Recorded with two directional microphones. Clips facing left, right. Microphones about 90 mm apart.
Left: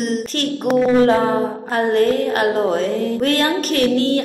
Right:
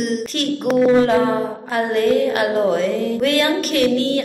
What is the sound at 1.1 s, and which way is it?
A woman's voice, 35° left (ahead or behind).